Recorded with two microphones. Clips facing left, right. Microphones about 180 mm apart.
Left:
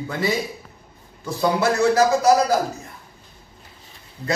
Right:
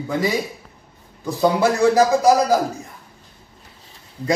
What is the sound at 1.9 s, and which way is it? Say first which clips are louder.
Speech: even; 15° right (ahead or behind).